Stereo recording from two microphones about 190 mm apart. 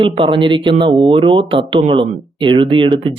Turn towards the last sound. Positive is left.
turn(degrees=-25)  # may be behind; listen again after turning